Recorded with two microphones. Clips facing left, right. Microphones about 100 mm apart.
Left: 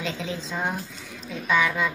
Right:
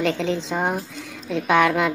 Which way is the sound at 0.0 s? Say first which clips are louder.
Right 8 dB; 65° right (ahead or behind).